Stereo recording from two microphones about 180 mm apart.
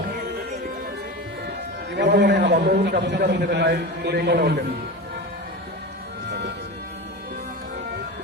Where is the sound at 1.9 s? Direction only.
70° right (ahead or behind).